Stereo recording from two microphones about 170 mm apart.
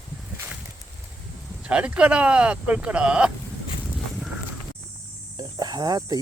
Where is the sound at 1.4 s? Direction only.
5° right (ahead or behind).